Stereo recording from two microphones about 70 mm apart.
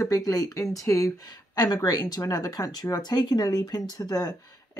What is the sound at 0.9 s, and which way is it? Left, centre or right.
Speech, left.